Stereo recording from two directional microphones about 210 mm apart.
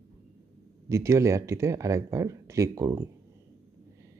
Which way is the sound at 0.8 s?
15° right (ahead or behind).